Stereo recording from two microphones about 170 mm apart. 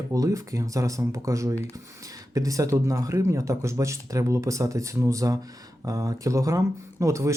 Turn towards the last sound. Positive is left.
turn(degrees=-15)  # may be behind; listen again after turning